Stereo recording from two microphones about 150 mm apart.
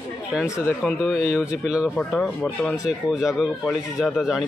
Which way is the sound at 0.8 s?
10° left (ahead or behind).